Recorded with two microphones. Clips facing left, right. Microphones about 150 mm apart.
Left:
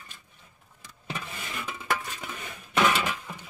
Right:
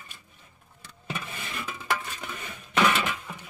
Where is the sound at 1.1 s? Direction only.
Centre (ahead or behind).